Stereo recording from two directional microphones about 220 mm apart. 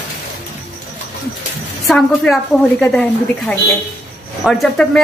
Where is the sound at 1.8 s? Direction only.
Centre (ahead or behind).